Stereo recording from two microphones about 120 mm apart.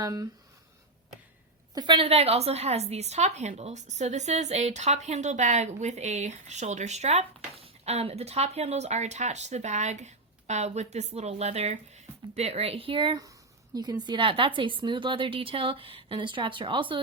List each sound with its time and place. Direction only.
0.0 s speech: 30° right (ahead or behind)
1.7 s a woman's voice: 40° right (ahead or behind)
13.7 s a woman's voice: 35° right (ahead or behind)